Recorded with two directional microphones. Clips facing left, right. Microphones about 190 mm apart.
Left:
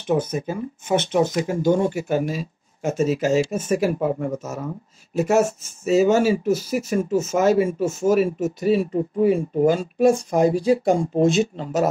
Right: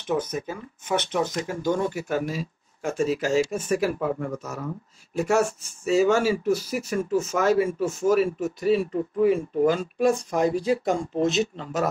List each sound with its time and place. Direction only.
0.1 s speech: 30° left (ahead or behind)